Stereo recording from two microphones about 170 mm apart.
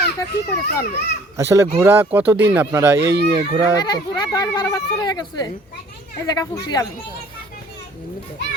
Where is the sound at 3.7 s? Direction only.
25° left (ahead or behind).